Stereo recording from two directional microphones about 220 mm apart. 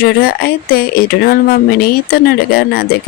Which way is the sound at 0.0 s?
45° left (ahead or behind).